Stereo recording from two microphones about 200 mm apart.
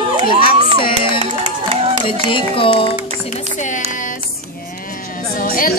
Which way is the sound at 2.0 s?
25° left (ahead or behind).